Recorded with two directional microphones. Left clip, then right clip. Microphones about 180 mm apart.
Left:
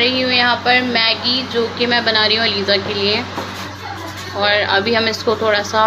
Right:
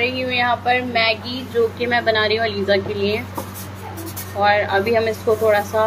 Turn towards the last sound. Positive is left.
turn(degrees=-15)  # may be behind; listen again after turning